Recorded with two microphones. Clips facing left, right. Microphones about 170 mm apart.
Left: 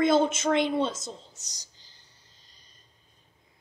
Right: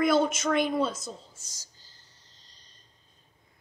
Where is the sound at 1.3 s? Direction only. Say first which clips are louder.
Left 1 dB; 20° left (ahead or behind).